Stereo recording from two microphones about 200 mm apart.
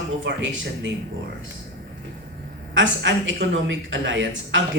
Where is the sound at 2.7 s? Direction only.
65° right (ahead or behind).